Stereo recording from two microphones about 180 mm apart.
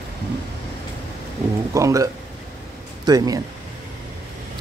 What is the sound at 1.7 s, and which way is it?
Speech, 20° right (ahead or behind).